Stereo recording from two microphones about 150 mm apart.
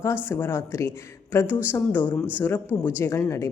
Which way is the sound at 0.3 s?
15° left (ahead or behind).